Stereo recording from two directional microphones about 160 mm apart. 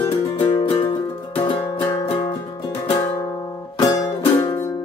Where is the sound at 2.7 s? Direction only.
15° left (ahead or behind).